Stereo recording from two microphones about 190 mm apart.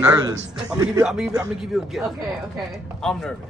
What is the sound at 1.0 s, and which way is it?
A woman's voice, 5° right (ahead or behind).